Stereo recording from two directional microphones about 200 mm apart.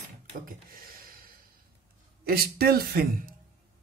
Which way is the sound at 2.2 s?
50° right (ahead or behind).